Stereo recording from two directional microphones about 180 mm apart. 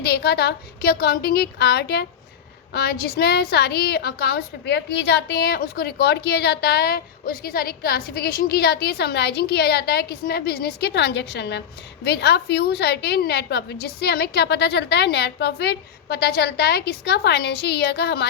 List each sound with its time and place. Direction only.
0.0 s a woman's voice: 65° left (ahead or behind)